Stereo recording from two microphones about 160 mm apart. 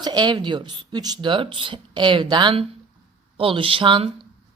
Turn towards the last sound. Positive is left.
turn(degrees=-30)  # may be behind; listen again after turning